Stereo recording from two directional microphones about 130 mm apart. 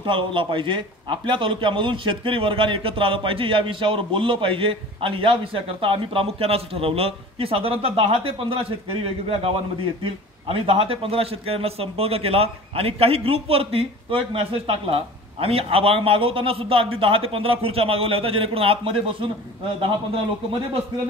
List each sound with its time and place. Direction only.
0.0 s a man's voice: 40° right (ahead or behind)
10.5 s a man's voice: 45° right (ahead or behind)